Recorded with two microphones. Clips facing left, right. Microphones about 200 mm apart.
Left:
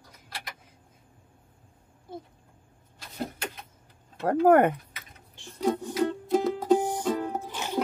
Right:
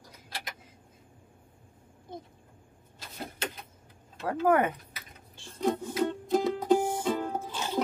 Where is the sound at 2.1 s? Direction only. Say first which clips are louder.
Left 2 dB; 5° left (ahead or behind).